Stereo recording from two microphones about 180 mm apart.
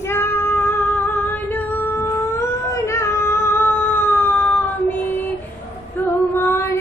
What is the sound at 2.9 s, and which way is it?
Cat, 15° left (ahead or behind).